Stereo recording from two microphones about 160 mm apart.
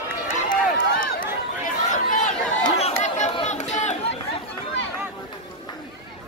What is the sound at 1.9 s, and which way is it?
Chatter, 55° left (ahead or behind).